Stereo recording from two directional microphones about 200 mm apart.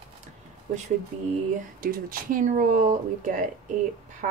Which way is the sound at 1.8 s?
45° right (ahead or behind).